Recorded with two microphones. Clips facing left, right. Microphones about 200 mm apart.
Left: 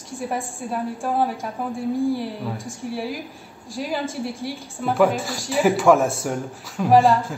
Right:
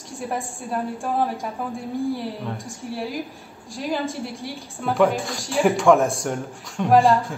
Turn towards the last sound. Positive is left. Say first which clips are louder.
# left 1 dB
turn(degrees=0)  # may be behind; listen again after turning